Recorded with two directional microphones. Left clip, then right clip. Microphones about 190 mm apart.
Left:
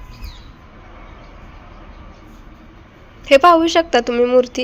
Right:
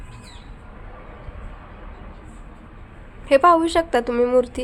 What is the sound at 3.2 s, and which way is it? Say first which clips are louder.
A woman's voice: left 4 dB; 20° left (ahead or behind).